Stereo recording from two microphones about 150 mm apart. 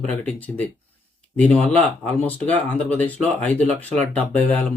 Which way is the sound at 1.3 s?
10° left (ahead or behind).